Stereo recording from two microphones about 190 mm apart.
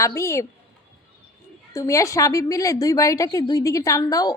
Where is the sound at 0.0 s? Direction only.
15° left (ahead or behind).